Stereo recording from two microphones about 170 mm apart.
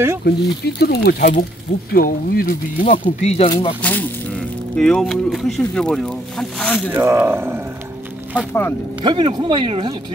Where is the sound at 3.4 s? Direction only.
30° left (ahead or behind).